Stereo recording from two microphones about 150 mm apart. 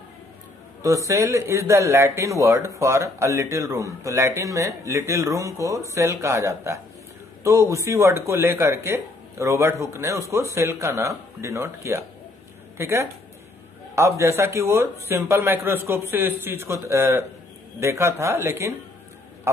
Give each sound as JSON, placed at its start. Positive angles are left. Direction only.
{"t": 0.8, "sound": "a man's voice", "side_deg": -20}